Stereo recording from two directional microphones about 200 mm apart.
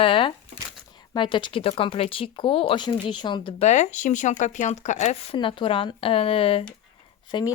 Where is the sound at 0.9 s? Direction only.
25° left (ahead or behind).